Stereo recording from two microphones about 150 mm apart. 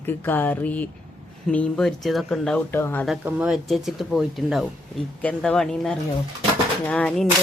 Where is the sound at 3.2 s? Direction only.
5° right (ahead or behind).